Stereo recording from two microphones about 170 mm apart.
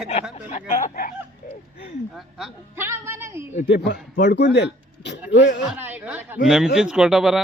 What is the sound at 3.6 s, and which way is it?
Speech, 90° left.